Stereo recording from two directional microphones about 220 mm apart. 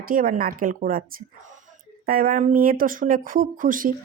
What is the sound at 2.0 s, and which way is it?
Speech, 40° right (ahead or behind).